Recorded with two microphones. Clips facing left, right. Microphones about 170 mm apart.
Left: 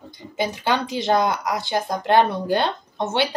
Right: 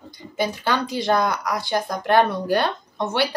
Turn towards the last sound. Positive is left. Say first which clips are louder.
# even
turn(degrees=20)  # may be behind; listen again after turning